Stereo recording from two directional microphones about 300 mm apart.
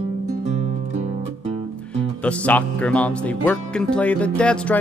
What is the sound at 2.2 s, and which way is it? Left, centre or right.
Music, centre.